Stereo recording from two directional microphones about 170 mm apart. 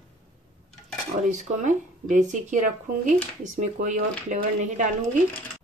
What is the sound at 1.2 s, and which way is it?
Speech, 45° right (ahead or behind).